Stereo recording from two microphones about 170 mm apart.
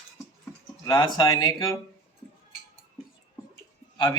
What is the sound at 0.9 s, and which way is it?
Speech, 25° left (ahead or behind).